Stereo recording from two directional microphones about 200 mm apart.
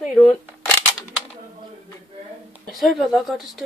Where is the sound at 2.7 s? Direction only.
Centre (ahead or behind).